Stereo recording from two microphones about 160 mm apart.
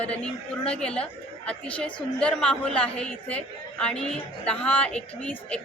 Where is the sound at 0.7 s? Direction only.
5° left (ahead or behind).